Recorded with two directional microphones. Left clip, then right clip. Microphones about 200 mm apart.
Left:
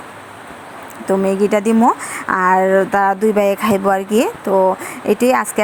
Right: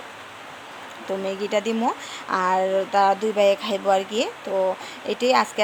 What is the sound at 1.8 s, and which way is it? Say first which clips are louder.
Speech: left 10 dB; 30° left (ahead or behind).